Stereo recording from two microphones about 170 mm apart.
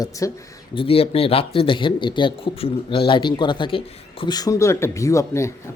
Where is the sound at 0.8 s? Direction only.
35° left (ahead or behind).